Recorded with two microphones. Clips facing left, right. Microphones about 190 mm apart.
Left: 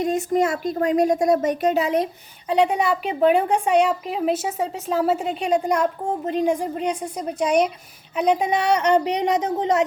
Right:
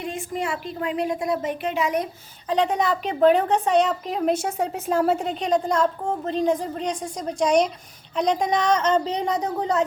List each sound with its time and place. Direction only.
0.0 s speech: 40° left (ahead or behind)
2.5 s a woman's voice: 10° left (ahead or behind)